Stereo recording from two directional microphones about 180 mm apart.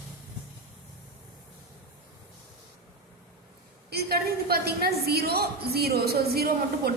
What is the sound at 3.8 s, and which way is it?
A woman's voice, 60° right (ahead or behind).